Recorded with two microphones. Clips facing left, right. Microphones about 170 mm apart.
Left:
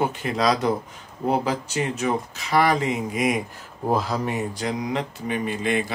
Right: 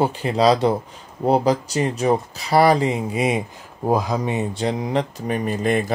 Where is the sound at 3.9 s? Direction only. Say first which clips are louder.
Right 3 dB; 15° right (ahead or behind).